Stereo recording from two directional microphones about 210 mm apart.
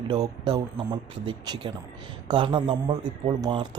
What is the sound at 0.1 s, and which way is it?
Speech, 20° right (ahead or behind).